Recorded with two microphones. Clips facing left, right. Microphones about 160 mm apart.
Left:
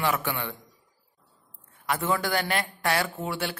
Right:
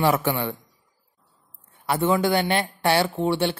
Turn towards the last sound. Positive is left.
turn(degrees=-25)  # may be behind; listen again after turning